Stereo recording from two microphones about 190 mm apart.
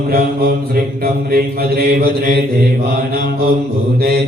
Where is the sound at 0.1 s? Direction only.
50° right (ahead or behind).